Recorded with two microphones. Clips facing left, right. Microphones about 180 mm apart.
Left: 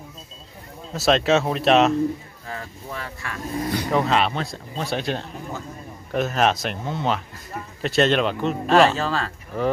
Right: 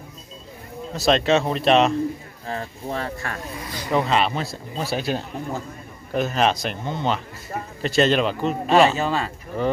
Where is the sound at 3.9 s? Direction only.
Centre (ahead or behind).